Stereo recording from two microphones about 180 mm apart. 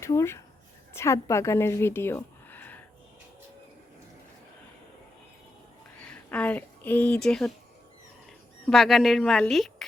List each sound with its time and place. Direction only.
0.0 s a woman's voice: 15° left (ahead or behind)
6.0 s speech: 5° left (ahead or behind)
8.6 s a woman's voice: centre (ahead or behind)